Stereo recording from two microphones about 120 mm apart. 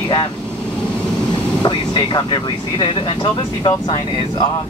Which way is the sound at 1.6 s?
40° left (ahead or behind).